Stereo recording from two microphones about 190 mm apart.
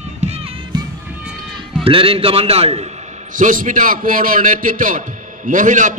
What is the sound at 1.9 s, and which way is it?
A man's voice, 30° right (ahead or behind).